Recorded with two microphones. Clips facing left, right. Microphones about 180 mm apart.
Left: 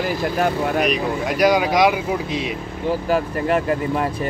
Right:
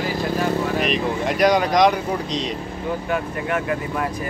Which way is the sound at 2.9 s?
35° left (ahead or behind).